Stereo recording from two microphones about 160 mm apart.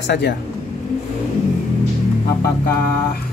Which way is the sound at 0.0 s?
90° left.